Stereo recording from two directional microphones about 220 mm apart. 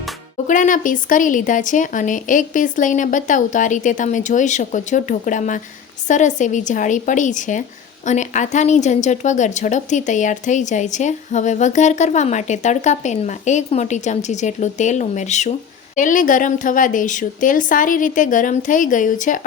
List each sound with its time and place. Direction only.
0.4 s a woman's voice: 35° left (ahead or behind)